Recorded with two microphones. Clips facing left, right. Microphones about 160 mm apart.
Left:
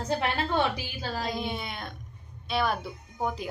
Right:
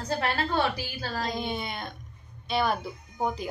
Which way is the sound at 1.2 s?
Centre (ahead or behind).